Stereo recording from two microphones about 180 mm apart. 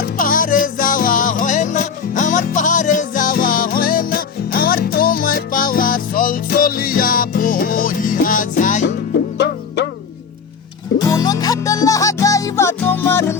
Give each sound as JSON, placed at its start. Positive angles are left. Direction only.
{"t": 0.2, "sound": "music", "side_deg": 50}
{"t": 11.0, "sound": "music", "side_deg": 20}